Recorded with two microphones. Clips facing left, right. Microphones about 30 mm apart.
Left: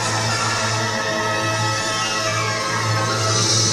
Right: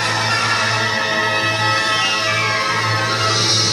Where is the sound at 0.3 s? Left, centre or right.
Right.